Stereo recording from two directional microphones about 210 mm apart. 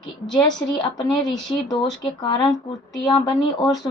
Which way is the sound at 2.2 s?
20° left (ahead or behind).